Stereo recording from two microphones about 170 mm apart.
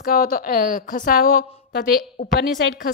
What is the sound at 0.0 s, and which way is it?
A woman's voice, 60° left (ahead or behind).